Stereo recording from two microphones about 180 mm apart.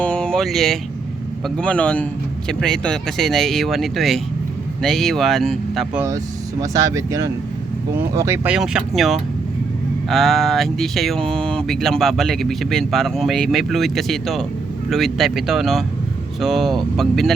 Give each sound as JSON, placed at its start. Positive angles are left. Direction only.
{"t": 0.0, "sound": "a sound", "side_deg": 5}
{"t": 1.5, "sound": "a man's voice", "side_deg": 5}
{"t": 6.6, "sound": "speech", "side_deg": -20}
{"t": 8.5, "sound": "speech", "side_deg": -5}
{"t": 10.1, "sound": "speech", "side_deg": 0}